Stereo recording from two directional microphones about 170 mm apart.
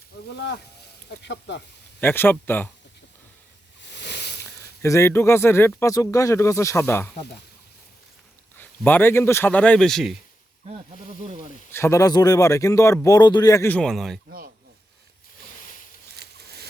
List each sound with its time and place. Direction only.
0.3 s speech: 80° left
1.2 s speech: 90° left
2.0 s speech: 10° left (ahead or behind)
3.9 s a sound: 90° left
4.8 s speech: 15° left (ahead or behind)
8.5 s speech: 10° left (ahead or behind)
11.7 s a man's voice: 15° left (ahead or behind)
13.7 s a man's voice: 5° left (ahead or behind)
14.3 s speech: 60° right (ahead or behind)
16.1 s a sound: 75° right (ahead or behind)